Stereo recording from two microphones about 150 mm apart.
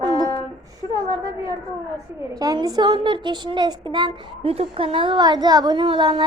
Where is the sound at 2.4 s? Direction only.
25° right (ahead or behind).